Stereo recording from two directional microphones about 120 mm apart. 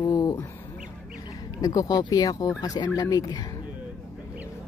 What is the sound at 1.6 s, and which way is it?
Speech, 30° left (ahead or behind).